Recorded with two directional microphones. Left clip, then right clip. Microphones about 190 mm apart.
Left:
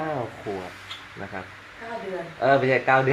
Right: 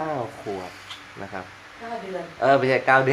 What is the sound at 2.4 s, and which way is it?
Speech, 10° right (ahead or behind).